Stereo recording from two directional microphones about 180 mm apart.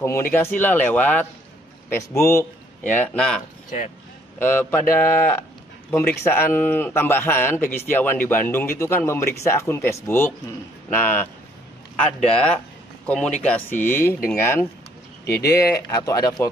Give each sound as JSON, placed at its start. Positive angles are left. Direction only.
{"t": 0.0, "sound": "a man's voice", "side_deg": 15}
{"t": 12.3, "sound": "a man's voice", "side_deg": 5}
{"t": 15.2, "sound": "speech", "side_deg": 60}
{"t": 15.5, "sound": "speech", "side_deg": 20}